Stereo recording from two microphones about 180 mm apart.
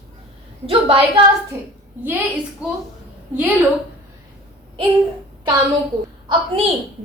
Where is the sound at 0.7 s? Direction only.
30° right (ahead or behind).